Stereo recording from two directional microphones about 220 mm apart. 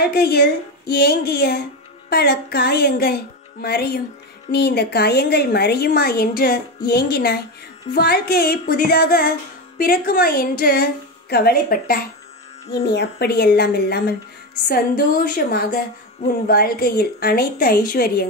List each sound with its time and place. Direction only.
0.0 s a woman's voice: 45° left (ahead or behind)